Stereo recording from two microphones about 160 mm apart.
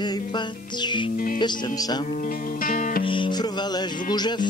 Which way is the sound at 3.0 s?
30° left (ahead or behind).